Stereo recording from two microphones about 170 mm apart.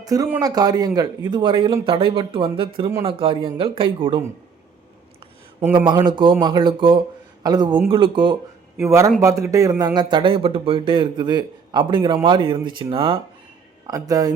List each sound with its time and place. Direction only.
0.0 s speech: 20° right (ahead or behind)
5.7 s speech: 30° right (ahead or behind)
8.8 s speech: 15° right (ahead or behind)